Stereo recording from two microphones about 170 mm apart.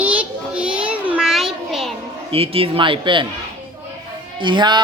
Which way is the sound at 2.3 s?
35° right (ahead or behind).